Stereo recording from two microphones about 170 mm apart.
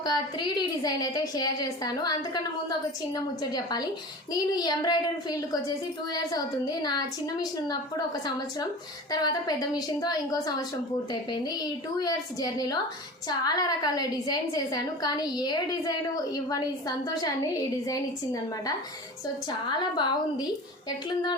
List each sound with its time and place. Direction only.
0.0 s a woman's voice: 25° left (ahead or behind)
19.5 s a woman's voice: 25° left (ahead or behind)